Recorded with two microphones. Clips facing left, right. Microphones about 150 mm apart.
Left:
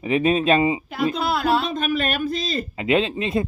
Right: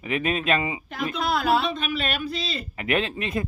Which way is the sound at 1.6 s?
45° left (ahead or behind).